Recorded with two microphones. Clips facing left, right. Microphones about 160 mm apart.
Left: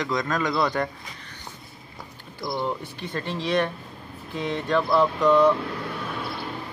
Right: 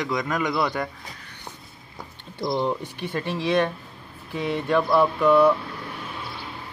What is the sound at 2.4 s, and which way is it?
Speech, 25° right (ahead or behind).